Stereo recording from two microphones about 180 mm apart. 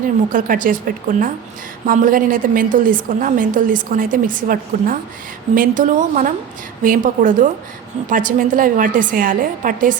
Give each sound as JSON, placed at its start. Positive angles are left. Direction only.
{"t": 0.3, "sound": "a woman's voice", "side_deg": -50}